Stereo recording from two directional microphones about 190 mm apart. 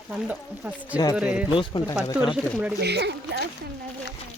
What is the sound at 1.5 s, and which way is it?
Speech, 25° left (ahead or behind).